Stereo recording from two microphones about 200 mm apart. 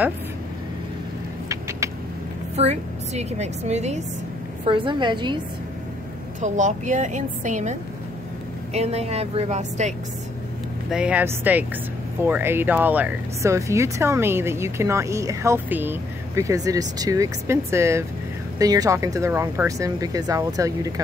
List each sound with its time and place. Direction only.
1.5 s vehicle: 15° right (ahead or behind)
2.5 s a woman's voice: 35° right (ahead or behind)
6.4 s a woman's voice: 35° right (ahead or behind)
8.7 s a woman's voice: 30° right (ahead or behind)
10.9 s speech: 5° right (ahead or behind)